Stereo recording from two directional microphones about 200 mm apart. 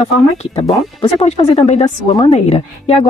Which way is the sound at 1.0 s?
30° left (ahead or behind).